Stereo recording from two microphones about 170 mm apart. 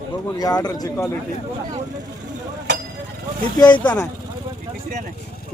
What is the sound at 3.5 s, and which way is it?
Speech, 25° left (ahead or behind).